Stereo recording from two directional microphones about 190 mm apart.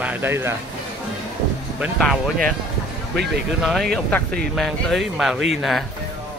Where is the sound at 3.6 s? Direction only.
Centre (ahead or behind).